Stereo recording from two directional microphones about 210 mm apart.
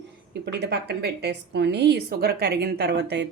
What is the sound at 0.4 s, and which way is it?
A woman's voice, 50° right (ahead or behind).